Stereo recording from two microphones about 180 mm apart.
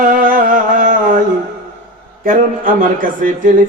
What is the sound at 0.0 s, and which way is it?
Music, 50° right (ahead or behind).